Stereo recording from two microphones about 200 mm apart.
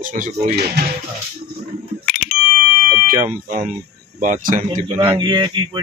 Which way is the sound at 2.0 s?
45° left (ahead or behind).